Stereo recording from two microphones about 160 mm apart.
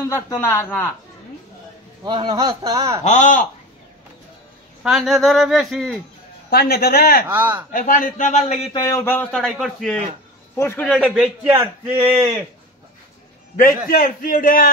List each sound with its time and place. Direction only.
0.0 s speech: 20° left (ahead or behind)
2.0 s speech: 30° right (ahead or behind)
3.0 s speech: 50° left (ahead or behind)
4.8 s a man's voice: centre (ahead or behind)
6.5 s a man's voice: 80° left
7.2 s a man's voice: 10° right (ahead or behind)
7.7 s a man's voice: 60° left (ahead or behind)
8.7 s speech: 20° left (ahead or behind)
9.3 s a man's voice: centre (ahead or behind)
10.5 s a man's voice: 15° left (ahead or behind)
11.0 s a man's voice: 5° right (ahead or behind)
13.8 s a man's voice: 65° left (ahead or behind)